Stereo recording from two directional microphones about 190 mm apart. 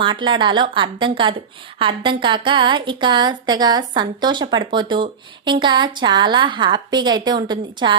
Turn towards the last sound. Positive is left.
turn(degrees=-25)  # may be behind; listen again after turning